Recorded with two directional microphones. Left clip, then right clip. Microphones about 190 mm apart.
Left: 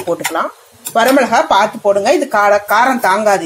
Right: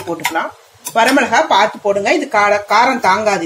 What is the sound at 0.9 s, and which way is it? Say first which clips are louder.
A woman's voice: left 1 dB; 25° left (ahead or behind).